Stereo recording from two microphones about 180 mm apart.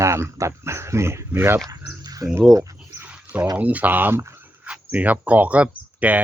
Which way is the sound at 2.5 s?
20° right (ahead or behind).